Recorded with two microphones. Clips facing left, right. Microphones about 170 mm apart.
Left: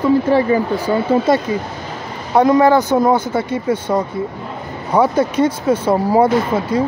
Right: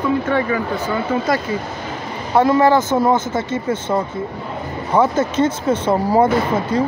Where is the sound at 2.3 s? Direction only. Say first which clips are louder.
Left 2 dB; 15° left (ahead or behind).